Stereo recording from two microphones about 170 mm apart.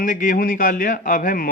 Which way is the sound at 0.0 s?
50° left (ahead or behind).